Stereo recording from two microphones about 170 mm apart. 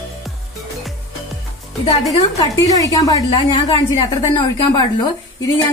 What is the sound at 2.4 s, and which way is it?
Speech, 20° left (ahead or behind).